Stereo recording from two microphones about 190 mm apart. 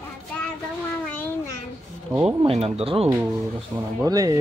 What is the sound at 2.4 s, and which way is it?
Speech, 30° right (ahead or behind).